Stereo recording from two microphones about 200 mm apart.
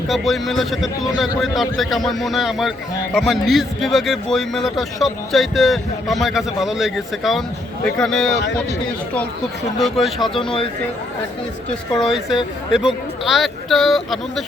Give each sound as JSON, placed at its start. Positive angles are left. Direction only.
{"t": 0.1, "sound": "a man's voice", "side_deg": 0}
{"t": 9.8, "sound": "a man's voice", "side_deg": 0}
{"t": 10.4, "sound": "speech", "side_deg": 25}
{"t": 11.9, "sound": "a man's voice", "side_deg": 0}